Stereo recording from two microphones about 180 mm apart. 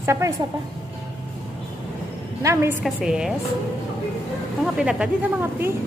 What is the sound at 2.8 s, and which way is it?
Speech, 5° right (ahead or behind).